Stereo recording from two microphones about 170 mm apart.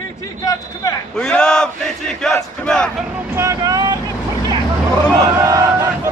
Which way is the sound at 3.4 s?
20° right (ahead or behind).